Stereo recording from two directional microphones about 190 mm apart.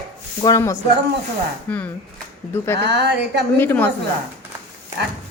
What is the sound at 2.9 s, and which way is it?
Speech, 60° right (ahead or behind).